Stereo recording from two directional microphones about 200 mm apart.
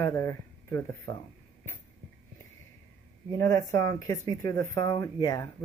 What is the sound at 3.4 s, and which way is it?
Speech, 15° left (ahead or behind).